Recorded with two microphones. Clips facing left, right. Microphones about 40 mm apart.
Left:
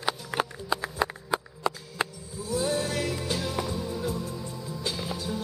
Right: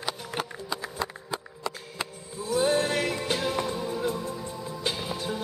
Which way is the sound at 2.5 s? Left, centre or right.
Right.